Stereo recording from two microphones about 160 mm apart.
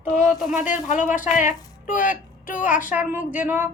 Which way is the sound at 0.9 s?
50° left (ahead or behind).